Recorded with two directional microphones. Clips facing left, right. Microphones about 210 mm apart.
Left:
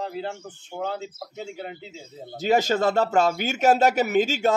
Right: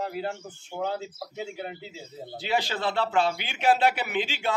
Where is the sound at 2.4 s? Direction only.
45° left (ahead or behind).